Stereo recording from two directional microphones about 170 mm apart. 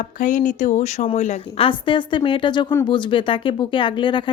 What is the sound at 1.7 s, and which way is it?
Speech, 30° left (ahead or behind).